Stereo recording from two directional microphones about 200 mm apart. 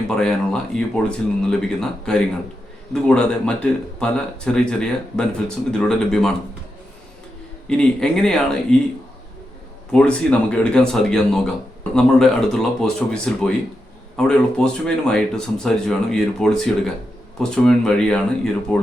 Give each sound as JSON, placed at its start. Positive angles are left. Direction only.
{"t": 0.2, "sound": "speech", "side_deg": 5}
{"t": 7.7, "sound": "speech", "side_deg": 5}
{"t": 9.9, "sound": "speech", "side_deg": 5}